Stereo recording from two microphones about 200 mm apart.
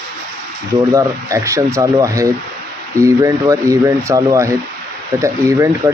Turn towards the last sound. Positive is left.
turn(degrees=-15)  # may be behind; listen again after turning